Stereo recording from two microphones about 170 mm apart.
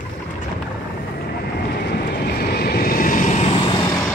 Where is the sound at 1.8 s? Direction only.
65° left (ahead or behind); by 4.1 s 25° left (ahead or behind).